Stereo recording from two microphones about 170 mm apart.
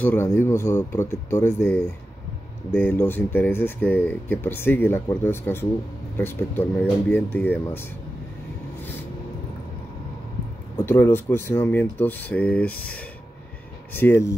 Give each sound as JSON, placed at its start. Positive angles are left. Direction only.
{"t": 0.0, "sound": "speech", "side_deg": 15}
{"t": 10.9, "sound": "speech", "side_deg": 15}